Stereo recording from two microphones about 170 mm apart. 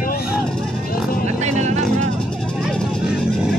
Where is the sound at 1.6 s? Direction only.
40° right (ahead or behind).